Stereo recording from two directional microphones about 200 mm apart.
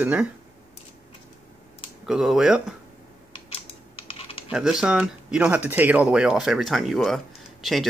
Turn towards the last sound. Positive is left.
turn(degrees=0)  # may be behind; listen again after turning